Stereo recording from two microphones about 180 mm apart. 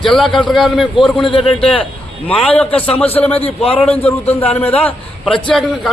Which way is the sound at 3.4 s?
30° left (ahead or behind).